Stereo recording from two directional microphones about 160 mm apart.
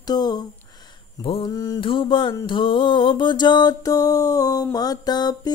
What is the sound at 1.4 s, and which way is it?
Mantra, 25° left (ahead or behind).